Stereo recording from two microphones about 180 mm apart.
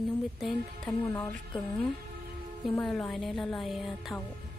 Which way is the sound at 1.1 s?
15° left (ahead or behind).